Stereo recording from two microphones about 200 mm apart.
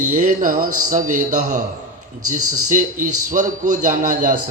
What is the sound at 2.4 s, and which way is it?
Speech, 90° right.